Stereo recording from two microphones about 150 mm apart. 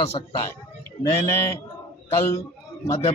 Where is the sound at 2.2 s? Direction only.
20° left (ahead or behind).